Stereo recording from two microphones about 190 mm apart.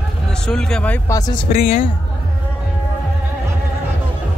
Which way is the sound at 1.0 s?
20° left (ahead or behind).